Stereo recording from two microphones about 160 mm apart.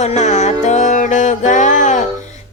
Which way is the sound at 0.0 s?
45° left (ahead or behind).